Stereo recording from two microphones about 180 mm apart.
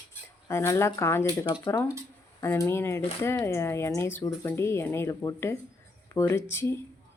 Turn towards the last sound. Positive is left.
turn(degrees=15)  # may be behind; listen again after turning